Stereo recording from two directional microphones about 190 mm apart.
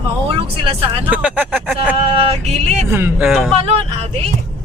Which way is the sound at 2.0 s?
30° right (ahead or behind).